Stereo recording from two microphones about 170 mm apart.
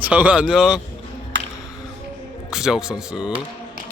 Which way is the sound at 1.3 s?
90° right.